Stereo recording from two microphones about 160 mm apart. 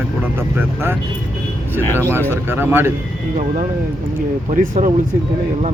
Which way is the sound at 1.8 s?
15° left (ahead or behind).